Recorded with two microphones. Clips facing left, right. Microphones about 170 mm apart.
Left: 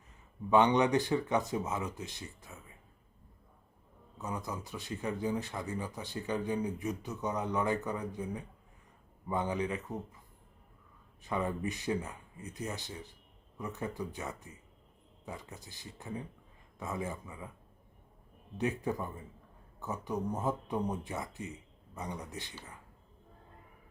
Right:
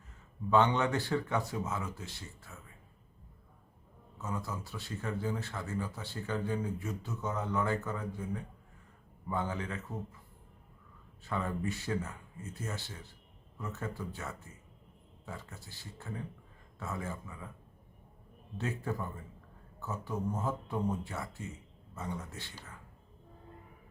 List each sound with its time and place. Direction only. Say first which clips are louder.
0.5 s speech: left 2 dB; 15° left (ahead or behind)
4.2 s speech: even; 15° left (ahead or behind)
11.2 s speech: left 2 dB; 15° left (ahead or behind)
18.5 s speech: left 3 dB; 15° left (ahead or behind)